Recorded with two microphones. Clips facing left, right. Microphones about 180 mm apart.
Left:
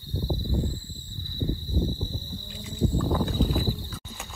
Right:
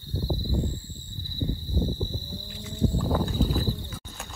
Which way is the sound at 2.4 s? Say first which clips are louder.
Even; 20° left (ahead or behind).